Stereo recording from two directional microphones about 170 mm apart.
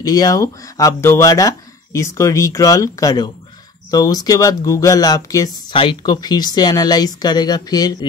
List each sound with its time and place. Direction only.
0.0 s speech: 20° left (ahead or behind)